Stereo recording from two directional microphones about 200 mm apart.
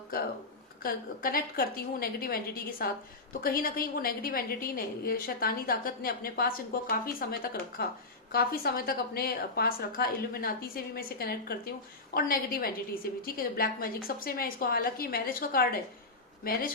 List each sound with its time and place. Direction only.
0.8 s a woman's voice: 45° left (ahead or behind)